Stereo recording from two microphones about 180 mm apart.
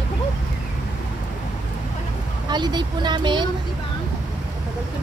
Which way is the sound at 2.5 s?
25° right (ahead or behind).